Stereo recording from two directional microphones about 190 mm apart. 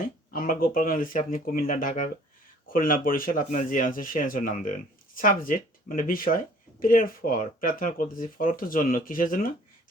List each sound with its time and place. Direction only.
0.3 s speech: 45° left (ahead or behind)